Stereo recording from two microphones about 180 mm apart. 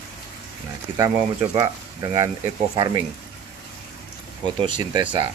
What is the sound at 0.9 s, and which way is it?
Speech, 20° right (ahead or behind).